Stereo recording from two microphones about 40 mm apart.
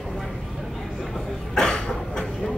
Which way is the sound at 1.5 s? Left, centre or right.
Centre.